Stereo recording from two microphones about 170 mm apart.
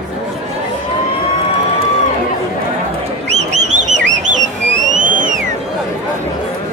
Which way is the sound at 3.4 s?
45° right (ahead or behind).